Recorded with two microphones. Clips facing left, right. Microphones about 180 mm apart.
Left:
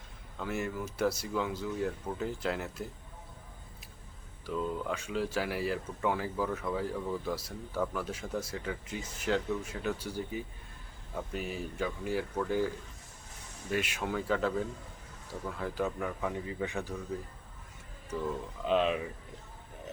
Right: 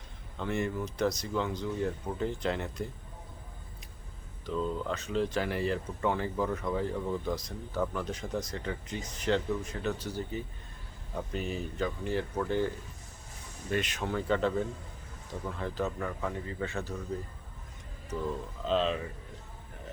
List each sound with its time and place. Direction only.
0.3 s speech: 5° left (ahead or behind)
4.4 s speech: 10° left (ahead or behind)
18.6 s speech: 15° left (ahead or behind)